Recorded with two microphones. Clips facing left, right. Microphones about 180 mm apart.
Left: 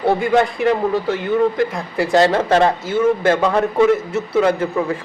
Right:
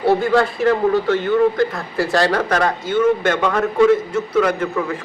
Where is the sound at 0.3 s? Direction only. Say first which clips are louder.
Even; 20° left (ahead or behind).